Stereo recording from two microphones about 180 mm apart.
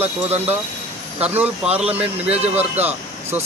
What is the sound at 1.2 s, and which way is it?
Speech, 10° right (ahead or behind).